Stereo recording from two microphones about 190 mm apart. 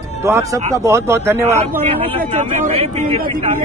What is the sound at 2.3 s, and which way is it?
Speech, 40° right (ahead or behind).